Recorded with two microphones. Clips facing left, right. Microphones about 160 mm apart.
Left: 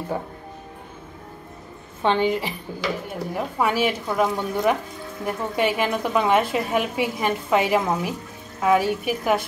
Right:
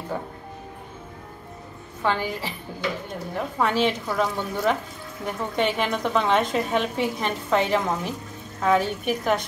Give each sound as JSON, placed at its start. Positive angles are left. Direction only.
{"t": 2.0, "sound": "a woman's voice", "side_deg": 20}